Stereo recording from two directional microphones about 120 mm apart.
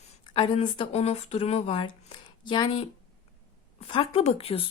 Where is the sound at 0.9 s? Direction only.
60° left (ahead or behind); by 2.8 s 40° left (ahead or behind).